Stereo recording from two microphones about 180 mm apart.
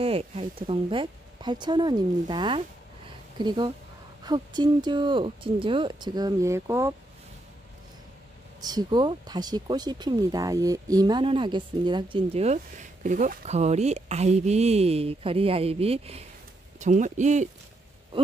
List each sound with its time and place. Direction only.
0.0 s speech: 30° right (ahead or behind); by 7.0 s 15° right (ahead or behind)
8.5 s speech: 20° right (ahead or behind); by 17.5 s 40° right (ahead or behind)